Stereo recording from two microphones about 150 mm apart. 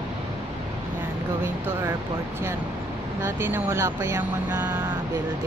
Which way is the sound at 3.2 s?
15° right (ahead or behind).